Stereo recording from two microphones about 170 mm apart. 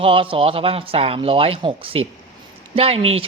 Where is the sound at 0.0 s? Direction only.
30° right (ahead or behind).